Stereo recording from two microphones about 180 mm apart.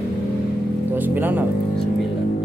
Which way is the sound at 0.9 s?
10° right (ahead or behind).